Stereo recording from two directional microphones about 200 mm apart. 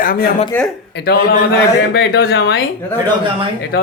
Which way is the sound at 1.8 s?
60° left (ahead or behind).